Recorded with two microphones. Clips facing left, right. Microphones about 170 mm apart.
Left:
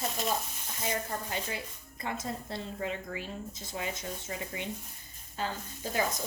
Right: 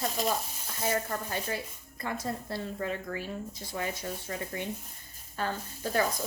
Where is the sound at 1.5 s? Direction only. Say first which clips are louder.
Right 3 dB; 20° left (ahead or behind).